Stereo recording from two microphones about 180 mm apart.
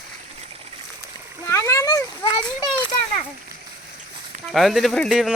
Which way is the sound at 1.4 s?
15° left (ahead or behind).